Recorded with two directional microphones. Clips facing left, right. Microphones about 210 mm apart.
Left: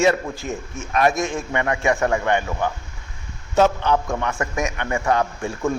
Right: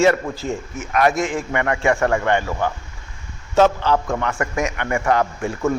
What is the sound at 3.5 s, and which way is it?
A man's voice, 15° left (ahead or behind).